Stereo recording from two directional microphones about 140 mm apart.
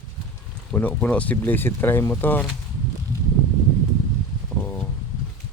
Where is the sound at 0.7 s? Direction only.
10° left (ahead or behind).